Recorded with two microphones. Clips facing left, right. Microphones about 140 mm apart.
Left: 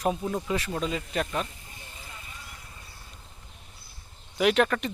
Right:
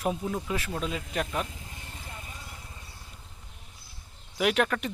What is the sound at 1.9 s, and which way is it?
Vehicle, 50° right (ahead or behind).